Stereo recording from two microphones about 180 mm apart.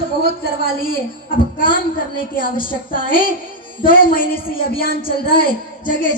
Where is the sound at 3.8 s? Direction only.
50° left (ahead or behind).